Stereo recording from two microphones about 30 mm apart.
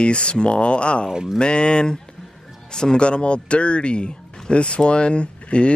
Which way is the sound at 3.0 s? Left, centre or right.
Left.